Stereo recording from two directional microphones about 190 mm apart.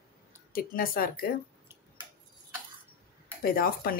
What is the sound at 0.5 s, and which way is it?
Speech, 50° left (ahead or behind).